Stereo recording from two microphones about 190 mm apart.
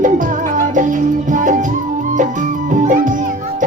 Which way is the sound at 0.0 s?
45° right (ahead or behind).